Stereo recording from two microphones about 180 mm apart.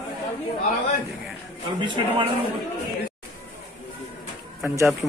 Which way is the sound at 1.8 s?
25° right (ahead or behind).